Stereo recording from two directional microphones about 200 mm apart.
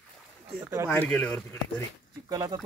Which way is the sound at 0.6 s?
15° right (ahead or behind).